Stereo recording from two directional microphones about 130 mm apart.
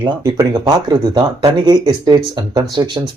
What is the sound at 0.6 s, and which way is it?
Speech, 35° right (ahead or behind).